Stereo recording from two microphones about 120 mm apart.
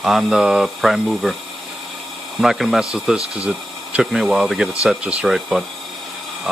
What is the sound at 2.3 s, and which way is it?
Speech, centre (ahead or behind).